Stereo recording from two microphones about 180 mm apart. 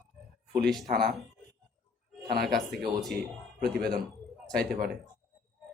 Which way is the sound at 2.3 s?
60° right (ahead or behind).